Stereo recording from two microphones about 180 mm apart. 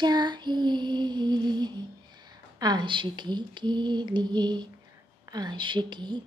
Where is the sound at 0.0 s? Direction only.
25° right (ahead or behind).